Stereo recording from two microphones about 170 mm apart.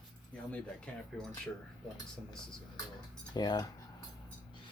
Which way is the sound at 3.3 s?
25° left (ahead or behind).